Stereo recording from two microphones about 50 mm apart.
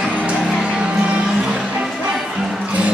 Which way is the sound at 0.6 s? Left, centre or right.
Right.